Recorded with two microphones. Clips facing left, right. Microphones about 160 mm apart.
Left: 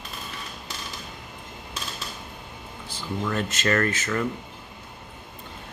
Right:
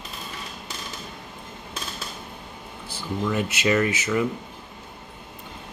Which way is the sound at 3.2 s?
10° right (ahead or behind).